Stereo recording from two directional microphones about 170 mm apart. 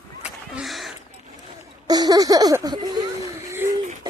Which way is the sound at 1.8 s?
25° right (ahead or behind).